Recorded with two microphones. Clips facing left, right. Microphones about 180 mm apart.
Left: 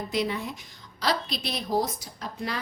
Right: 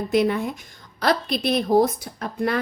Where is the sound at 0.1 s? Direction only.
55° right (ahead or behind).